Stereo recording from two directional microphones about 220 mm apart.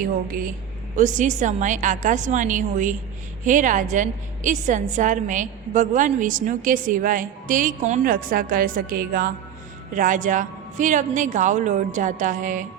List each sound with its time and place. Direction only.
0.0 s a woman's voice: 40° right (ahead or behind)